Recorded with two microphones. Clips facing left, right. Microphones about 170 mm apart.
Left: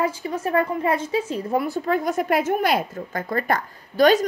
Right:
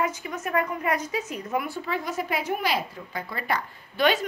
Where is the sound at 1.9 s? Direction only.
50° left (ahead or behind).